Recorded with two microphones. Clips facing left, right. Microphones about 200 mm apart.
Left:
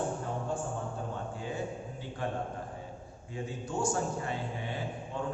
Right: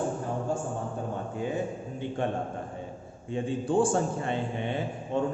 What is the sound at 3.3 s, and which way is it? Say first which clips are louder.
A man's voice: right 10 dB; 30° right (ahead or behind).